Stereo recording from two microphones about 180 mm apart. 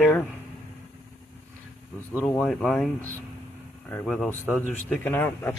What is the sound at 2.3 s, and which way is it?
Speech, 10° left (ahead or behind).